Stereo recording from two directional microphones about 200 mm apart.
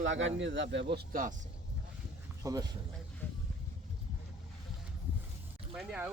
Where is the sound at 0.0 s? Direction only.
70° right (ahead or behind); by 1.3 s 50° right (ahead or behind).